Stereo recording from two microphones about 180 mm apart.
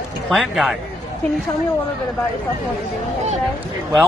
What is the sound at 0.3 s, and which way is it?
Speech, centre (ahead or behind).